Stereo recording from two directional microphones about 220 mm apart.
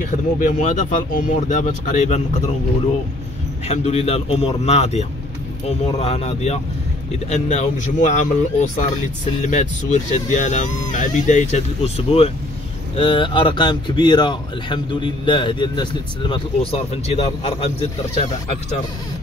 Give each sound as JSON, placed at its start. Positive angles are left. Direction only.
{"t": 0.0, "sound": "speech", "side_deg": 35}
{"t": 3.6, "sound": "speech", "side_deg": 30}